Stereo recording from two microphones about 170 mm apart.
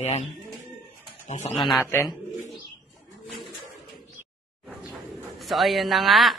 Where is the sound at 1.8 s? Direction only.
15° left (ahead or behind).